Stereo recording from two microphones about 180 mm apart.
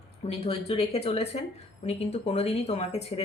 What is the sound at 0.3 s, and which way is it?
Speech, 35° left (ahead or behind).